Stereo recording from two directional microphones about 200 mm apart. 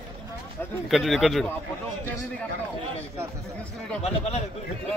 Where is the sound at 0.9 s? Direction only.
Centre (ahead or behind).